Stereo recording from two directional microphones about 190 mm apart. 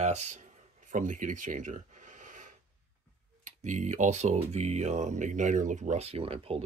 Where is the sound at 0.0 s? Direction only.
35° right (ahead or behind).